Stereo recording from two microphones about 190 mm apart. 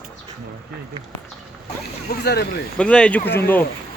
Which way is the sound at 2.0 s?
60° left (ahead or behind).